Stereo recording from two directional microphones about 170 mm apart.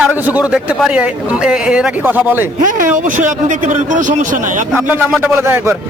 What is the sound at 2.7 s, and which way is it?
Speech, 50° right (ahead or behind).